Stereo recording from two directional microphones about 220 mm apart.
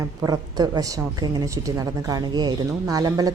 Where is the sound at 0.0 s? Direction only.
15° right (ahead or behind).